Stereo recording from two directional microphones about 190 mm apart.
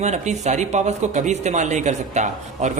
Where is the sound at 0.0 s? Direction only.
35° right (ahead or behind).